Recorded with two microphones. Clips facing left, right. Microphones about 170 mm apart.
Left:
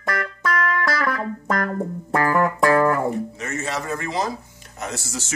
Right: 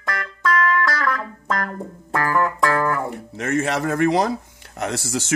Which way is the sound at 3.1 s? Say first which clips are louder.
Right 2 dB; 60° right (ahead or behind).